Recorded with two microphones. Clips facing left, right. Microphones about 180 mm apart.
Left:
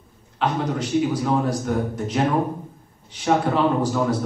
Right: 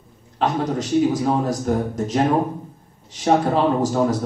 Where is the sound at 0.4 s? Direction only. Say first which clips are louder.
Right 2 dB; 40° right (ahead or behind).